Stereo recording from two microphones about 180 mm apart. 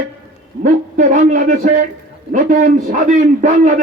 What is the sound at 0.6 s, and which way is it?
A man's voice, 45° right (ahead or behind).